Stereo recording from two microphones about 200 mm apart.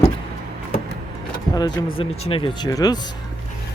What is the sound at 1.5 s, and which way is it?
Speech, 20° left (ahead or behind).